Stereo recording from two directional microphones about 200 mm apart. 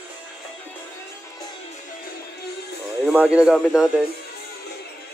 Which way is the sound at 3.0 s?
5° right (ahead or behind).